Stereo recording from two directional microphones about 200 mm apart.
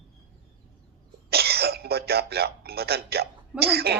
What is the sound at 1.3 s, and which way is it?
A woman's voice, 50° right (ahead or behind).